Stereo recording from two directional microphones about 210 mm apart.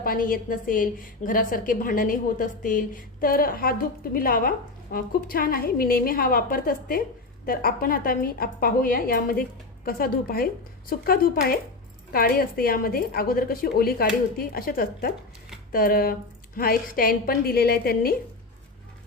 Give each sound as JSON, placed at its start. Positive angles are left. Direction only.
{"t": 0.0, "sound": "a woman's voice", "side_deg": 40}